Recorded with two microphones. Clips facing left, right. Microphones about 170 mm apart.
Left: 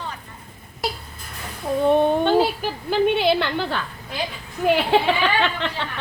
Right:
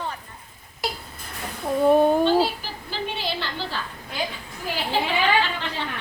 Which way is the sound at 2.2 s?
55° left (ahead or behind).